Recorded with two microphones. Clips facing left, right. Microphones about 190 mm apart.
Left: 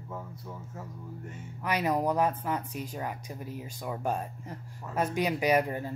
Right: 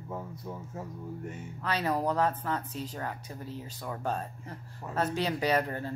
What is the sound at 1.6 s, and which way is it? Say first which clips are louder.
A woman's voice: left 2 dB; 15° left (ahead or behind).